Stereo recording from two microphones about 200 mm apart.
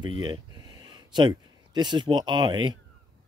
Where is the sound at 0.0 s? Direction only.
25° right (ahead or behind).